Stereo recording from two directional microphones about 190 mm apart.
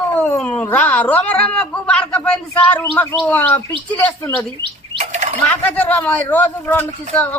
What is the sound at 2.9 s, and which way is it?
A man's voice, 10° left (ahead or behind).